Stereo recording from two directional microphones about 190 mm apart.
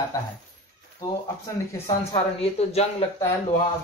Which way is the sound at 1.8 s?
30° left (ahead or behind).